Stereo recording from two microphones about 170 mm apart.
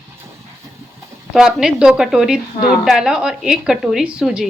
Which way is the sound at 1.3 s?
5° right (ahead or behind).